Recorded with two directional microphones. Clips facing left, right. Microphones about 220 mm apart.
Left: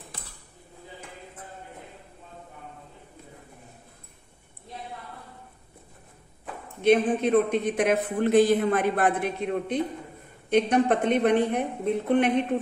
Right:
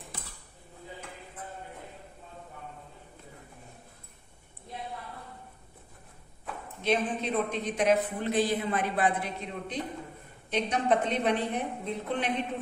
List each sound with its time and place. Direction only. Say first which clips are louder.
6.8 s a man's voice: left 8 dB; 55° left (ahead or behind)